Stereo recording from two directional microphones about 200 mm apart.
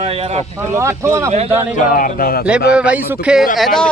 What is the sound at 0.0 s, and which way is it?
Speech, 30° right (ahead or behind).